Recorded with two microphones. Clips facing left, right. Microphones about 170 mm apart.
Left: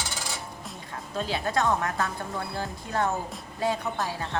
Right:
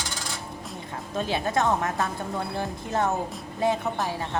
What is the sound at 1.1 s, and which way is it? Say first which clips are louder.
A woman's voice: right 2 dB; 20° right (ahead or behind).